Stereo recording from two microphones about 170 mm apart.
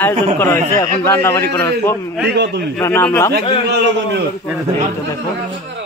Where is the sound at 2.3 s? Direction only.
85° right.